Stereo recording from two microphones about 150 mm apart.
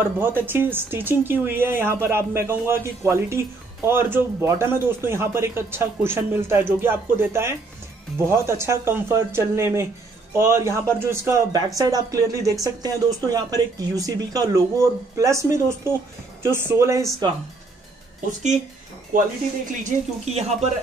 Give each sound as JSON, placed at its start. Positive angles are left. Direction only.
{"t": 0.0, "sound": "speech", "side_deg": -15}
{"t": 19.8, "sound": "speech", "side_deg": -45}